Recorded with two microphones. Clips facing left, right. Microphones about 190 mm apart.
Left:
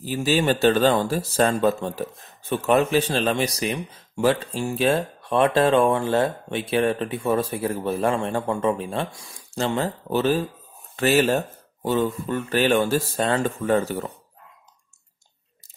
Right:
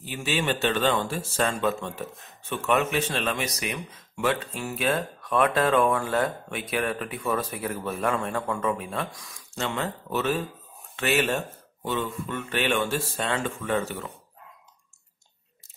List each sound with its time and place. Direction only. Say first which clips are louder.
0.0 s speech: left 7 dB; 35° left (ahead or behind)